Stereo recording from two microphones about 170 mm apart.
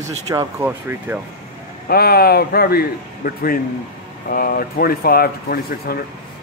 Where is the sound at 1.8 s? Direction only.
65° left (ahead or behind).